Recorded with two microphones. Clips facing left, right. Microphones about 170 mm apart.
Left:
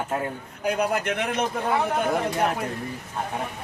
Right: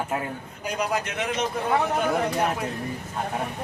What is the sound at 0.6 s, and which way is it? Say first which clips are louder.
Speech: left 4 dB; 60° left (ahead or behind).